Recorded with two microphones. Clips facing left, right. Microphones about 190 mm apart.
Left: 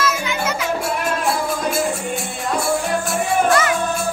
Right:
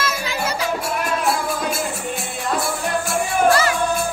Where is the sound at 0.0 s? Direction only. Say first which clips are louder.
Left 3 dB; 35° right (ahead or behind).